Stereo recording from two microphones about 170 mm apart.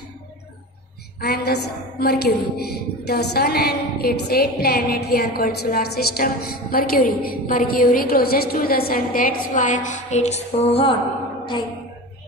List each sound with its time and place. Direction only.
1.2 s a woman's voice: 65° left (ahead or behind); by 11.0 s 35° left (ahead or behind)